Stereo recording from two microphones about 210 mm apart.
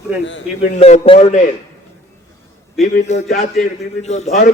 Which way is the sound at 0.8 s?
30° left (ahead or behind).